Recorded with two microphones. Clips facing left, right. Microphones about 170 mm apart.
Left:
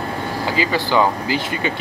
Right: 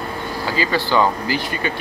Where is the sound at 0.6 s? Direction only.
15° left (ahead or behind).